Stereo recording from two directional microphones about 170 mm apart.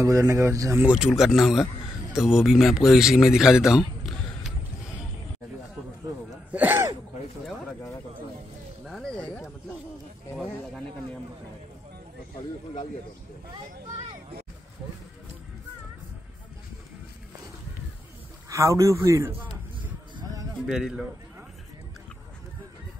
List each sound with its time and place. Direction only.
0.0 s speech: 20° right (ahead or behind)
0.8 s speech: 5° right (ahead or behind)
6.3 s gasp: 10° right (ahead or behind)
8.8 s a sound: 5° left (ahead or behind)
10.3 s snake: centre (ahead or behind)
18.5 s a man's voice: 15° right (ahead or behind)